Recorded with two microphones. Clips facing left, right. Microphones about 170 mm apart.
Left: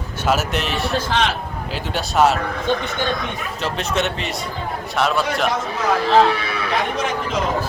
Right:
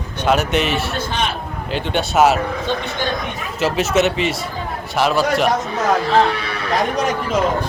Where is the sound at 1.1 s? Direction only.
90° left.